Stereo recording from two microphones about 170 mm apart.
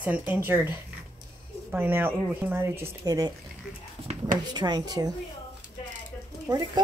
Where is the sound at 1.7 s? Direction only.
10° right (ahead or behind).